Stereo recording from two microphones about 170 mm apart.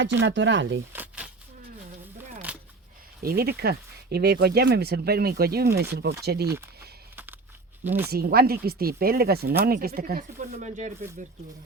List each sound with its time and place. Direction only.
0.0 s speech: 90° right
0.9 s a sound: 10° right (ahead or behind)
2.5 s a sound: 10° right (ahead or behind)
3.2 s speech: 65° right (ahead or behind)
7.9 s speech: 10° right (ahead or behind)
8.1 s speech: 65° right (ahead or behind); by 10.9 s 45° right (ahead or behind)